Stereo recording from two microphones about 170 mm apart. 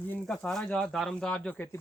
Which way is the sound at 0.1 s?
5° left (ahead or behind).